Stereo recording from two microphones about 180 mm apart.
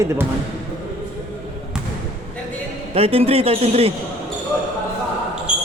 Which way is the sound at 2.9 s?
35° right (ahead or behind).